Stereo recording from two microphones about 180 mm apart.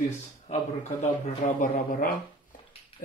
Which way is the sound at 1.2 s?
45° left (ahead or behind).